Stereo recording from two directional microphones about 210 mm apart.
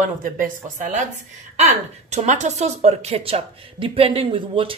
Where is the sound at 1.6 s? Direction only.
35° right (ahead or behind).